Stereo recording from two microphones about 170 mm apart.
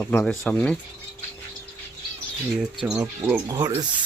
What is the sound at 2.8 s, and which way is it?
Speech, 5° right (ahead or behind).